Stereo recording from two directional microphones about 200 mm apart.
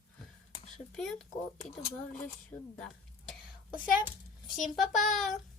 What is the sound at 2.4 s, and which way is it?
Speech, 5° left (ahead or behind).